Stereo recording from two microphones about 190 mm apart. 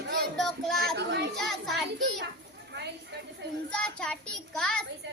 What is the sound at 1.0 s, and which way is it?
Speech, 65° right (ahead or behind).